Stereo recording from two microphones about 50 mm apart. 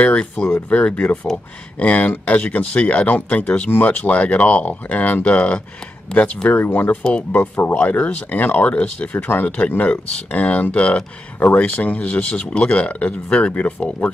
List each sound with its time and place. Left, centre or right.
0.0 s speech: left
6.6 s speech: left
7.0 s speech: centre
7.3 s speech: left
7.7 s speech: left